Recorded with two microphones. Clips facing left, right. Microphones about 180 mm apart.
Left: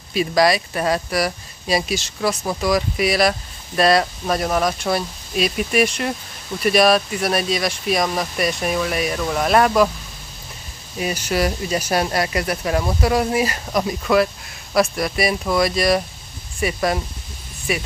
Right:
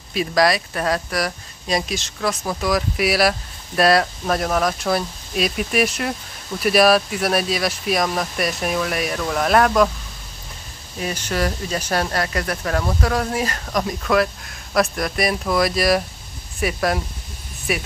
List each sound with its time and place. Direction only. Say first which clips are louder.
0.1 s speech: left 1 dB; centre (ahead or behind)
11.0 s speech: left 2 dB; 10° left (ahead or behind)